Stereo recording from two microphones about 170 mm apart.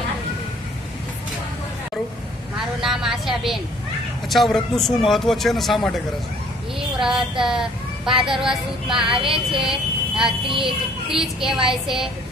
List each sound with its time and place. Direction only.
2.8 s a man's voice: centre (ahead or behind)
9.2 s a sound: 30° right (ahead or behind)
9.6 s a man's voice: centre (ahead or behind)